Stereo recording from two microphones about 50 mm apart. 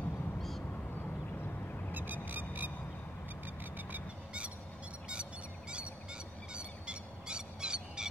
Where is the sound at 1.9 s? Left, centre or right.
Right.